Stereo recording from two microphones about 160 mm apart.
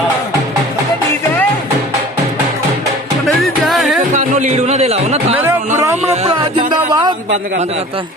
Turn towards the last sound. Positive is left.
turn(degrees=-25)  # may be behind; listen again after turning